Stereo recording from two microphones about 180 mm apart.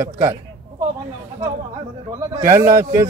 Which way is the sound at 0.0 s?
15° right (ahead or behind).